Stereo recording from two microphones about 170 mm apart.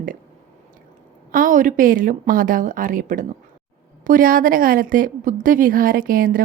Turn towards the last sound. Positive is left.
turn(degrees=-55)  # may be behind; listen again after turning